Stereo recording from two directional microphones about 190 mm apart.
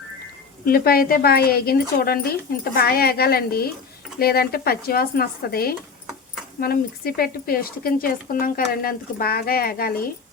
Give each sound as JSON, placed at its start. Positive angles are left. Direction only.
{"t": 0.6, "sound": "speech", "side_deg": 50}